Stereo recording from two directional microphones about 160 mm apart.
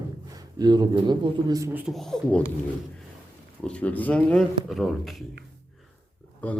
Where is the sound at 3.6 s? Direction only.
5° left (ahead or behind).